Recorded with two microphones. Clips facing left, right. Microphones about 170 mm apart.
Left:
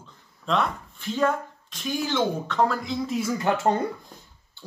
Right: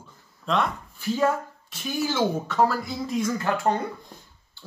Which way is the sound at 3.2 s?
10° left (ahead or behind).